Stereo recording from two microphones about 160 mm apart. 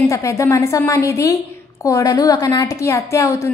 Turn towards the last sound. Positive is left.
turn(degrees=20)  # may be behind; listen again after turning